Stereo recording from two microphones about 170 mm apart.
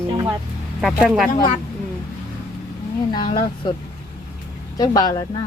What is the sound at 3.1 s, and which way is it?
Speech, 25° left (ahead or behind).